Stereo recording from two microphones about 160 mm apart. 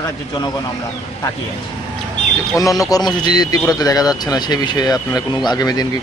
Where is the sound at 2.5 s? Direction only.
20° left (ahead or behind).